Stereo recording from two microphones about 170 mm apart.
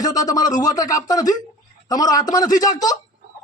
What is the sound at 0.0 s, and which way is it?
A man's voice, 20° left (ahead or behind).